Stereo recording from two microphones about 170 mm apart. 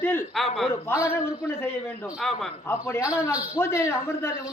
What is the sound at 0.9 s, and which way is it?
Speech, 15° left (ahead or behind).